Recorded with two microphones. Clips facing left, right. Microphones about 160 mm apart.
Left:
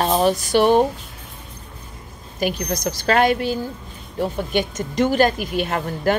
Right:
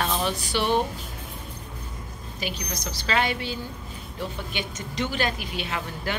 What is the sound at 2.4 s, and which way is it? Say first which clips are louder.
Speech: left 11 dB; 50° left (ahead or behind).